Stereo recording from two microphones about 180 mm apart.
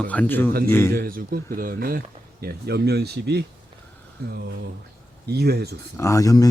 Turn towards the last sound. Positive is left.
turn(degrees=20)  # may be behind; listen again after turning